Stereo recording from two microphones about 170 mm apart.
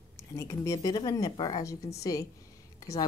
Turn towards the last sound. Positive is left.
turn(degrees=20)  # may be behind; listen again after turning